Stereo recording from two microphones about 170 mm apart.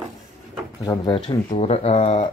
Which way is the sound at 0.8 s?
25° left (ahead or behind).